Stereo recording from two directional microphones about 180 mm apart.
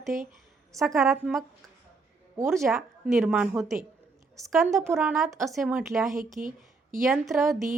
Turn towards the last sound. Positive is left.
turn(degrees=0)  # may be behind; listen again after turning